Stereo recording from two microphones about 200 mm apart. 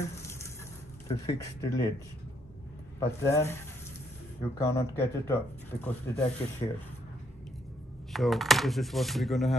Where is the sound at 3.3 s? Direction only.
10° left (ahead or behind).